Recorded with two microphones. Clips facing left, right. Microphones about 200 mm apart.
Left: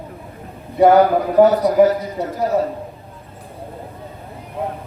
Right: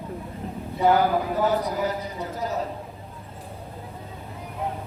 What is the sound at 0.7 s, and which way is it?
A man's voice, 80° left.